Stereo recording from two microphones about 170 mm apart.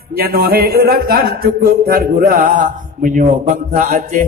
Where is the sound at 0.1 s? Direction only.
60° right (ahead or behind).